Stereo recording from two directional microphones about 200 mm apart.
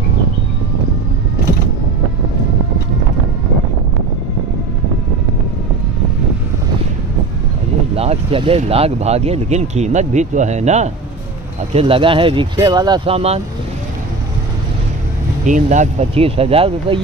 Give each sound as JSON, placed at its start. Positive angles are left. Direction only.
{"t": 7.9, "sound": "speech", "side_deg": -30}
{"t": 15.4, "sound": "speech", "side_deg": -40}